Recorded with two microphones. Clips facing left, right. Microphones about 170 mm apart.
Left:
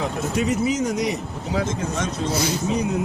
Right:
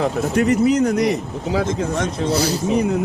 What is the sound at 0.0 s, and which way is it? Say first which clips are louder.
Speech: right 5 dB; 60° right (ahead or behind).